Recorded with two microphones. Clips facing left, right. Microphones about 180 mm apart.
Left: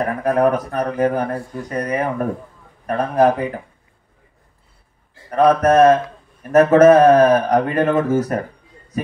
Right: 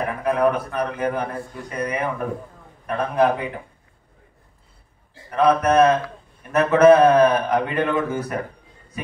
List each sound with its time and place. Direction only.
0.0 s speech: 45° left (ahead or behind)
5.3 s speech: 40° left (ahead or behind)